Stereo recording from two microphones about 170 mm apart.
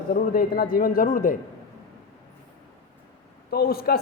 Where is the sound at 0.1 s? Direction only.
55° left (ahead or behind).